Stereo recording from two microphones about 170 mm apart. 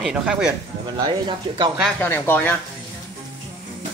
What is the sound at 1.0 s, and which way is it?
Speech, 25° right (ahead or behind).